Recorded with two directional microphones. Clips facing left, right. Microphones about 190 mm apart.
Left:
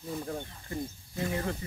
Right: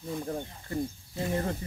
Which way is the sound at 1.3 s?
35° right (ahead or behind).